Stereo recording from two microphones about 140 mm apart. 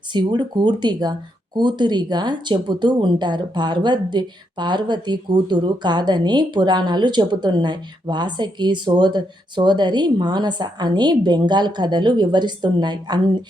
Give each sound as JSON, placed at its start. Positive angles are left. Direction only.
{"t": 0.1, "sound": "speech", "side_deg": -35}